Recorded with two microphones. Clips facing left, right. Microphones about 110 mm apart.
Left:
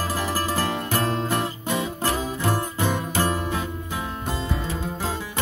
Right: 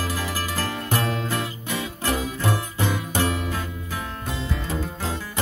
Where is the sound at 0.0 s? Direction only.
40° left (ahead or behind).